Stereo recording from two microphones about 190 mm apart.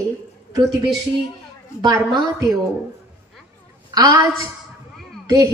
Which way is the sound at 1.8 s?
20° right (ahead or behind).